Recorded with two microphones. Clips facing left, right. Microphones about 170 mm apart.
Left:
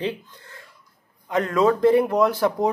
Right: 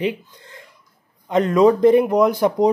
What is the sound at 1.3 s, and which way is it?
Speech, 20° right (ahead or behind).